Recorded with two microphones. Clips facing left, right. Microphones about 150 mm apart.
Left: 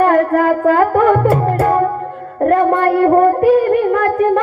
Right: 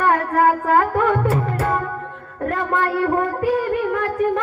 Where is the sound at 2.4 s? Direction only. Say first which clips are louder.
Left 9 dB; 45° left (ahead or behind).